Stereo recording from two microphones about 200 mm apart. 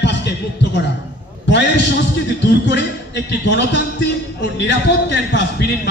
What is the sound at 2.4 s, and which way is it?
A man's voice, 60° left (ahead or behind).